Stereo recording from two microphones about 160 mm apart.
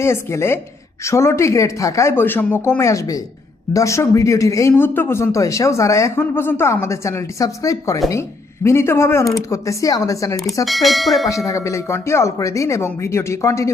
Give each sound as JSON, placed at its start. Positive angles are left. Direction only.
{"t": 0.0, "sound": "a woman's voice", "side_deg": 15}
{"t": 10.7, "sound": "speech", "side_deg": 0}
{"t": 11.3, "sound": "a woman's voice", "side_deg": 20}